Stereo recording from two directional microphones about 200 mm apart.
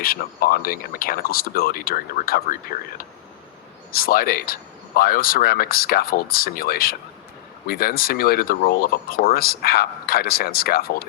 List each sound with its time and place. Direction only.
0.0 s speech: 45° left (ahead or behind)
3.9 s speech: 50° left (ahead or behind)